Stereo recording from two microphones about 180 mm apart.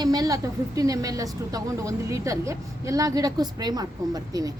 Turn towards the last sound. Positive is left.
turn(degrees=-20)  # may be behind; listen again after turning